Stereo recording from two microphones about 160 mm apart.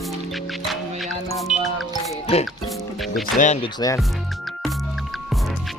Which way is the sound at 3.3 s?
50° left (ahead or behind).